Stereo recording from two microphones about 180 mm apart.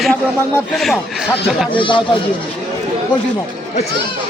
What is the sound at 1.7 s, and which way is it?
Speech, 25° left (ahead or behind).